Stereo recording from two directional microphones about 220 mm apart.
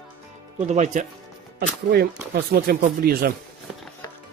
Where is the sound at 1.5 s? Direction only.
45° right (ahead or behind).